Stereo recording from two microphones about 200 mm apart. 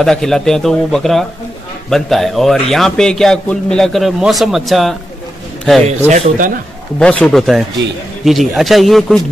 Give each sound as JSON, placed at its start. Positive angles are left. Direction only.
{"t": 0.0, "sound": "a man's voice", "side_deg": 0}
{"t": 5.9, "sound": "speech", "side_deg": -35}
{"t": 7.0, "sound": "a man's voice", "side_deg": 5}